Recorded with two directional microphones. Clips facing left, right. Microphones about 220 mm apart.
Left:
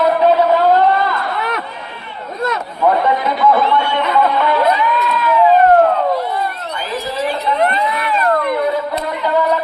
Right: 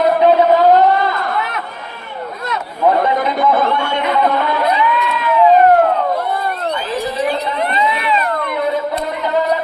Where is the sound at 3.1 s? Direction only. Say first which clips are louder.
Even; 45° right (ahead or behind).